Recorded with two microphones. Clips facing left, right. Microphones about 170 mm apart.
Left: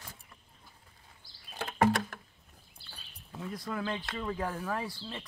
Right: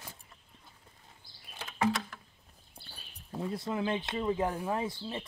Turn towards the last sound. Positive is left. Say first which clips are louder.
# right 3 dB
turn(degrees=-20)  # may be behind; listen again after turning